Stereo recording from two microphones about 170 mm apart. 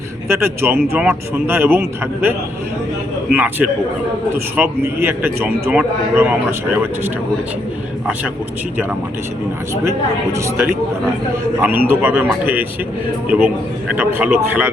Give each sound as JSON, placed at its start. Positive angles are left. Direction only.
{"t": 0.3, "sound": "speech", "side_deg": -15}
{"t": 3.3, "sound": "speech", "side_deg": -10}
{"t": 10.3, "sound": "speech", "side_deg": -15}